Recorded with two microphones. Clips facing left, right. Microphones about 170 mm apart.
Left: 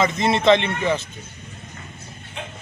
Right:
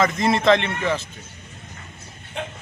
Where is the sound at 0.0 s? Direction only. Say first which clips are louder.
Even; 25° left (ahead or behind).